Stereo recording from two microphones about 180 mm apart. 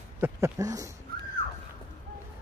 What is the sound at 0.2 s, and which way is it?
Speech, 15° right (ahead or behind).